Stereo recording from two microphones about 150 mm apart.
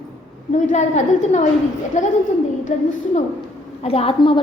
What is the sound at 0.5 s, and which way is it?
A woman's voice, 55° left (ahead or behind).